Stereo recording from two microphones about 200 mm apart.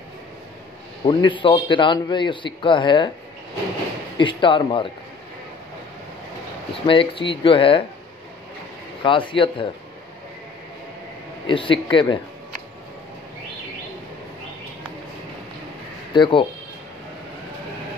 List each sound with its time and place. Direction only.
1.0 s speech: 25° left (ahead or behind)
4.2 s speech: 25° left (ahead or behind)
6.7 s speech: 25° left (ahead or behind)
9.0 s speech: 25° left (ahead or behind)
11.4 s speech: 25° left (ahead or behind)
16.1 s speech: 25° left (ahead or behind)